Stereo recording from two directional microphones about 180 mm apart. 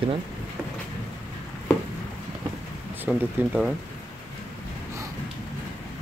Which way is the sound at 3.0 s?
10° right (ahead or behind).